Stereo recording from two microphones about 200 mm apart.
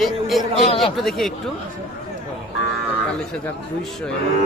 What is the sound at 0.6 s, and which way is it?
Speech, 30° left (ahead or behind).